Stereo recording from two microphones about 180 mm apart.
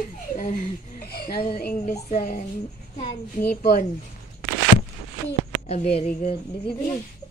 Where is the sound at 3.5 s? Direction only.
60° left (ahead or behind).